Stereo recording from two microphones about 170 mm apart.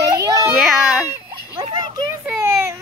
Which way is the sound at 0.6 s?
Centre (ahead or behind).